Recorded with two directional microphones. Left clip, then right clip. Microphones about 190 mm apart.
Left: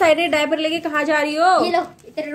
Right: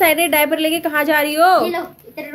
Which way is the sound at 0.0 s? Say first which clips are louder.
Right 1 dB; 15° right (ahead or behind).